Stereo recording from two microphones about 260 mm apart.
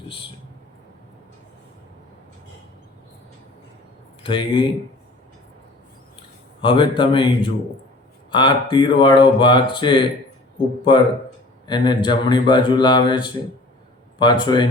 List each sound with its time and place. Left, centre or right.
4.2 s speech: centre
6.6 s speech: centre
11.7 s speech: centre